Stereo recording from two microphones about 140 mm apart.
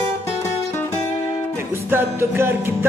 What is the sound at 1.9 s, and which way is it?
Music, 15° right (ahead or behind).